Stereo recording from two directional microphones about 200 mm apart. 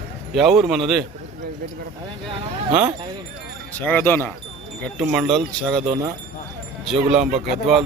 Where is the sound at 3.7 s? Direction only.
10° left (ahead or behind).